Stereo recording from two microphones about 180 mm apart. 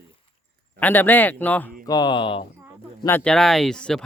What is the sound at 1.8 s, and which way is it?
Speech, 20° left (ahead or behind).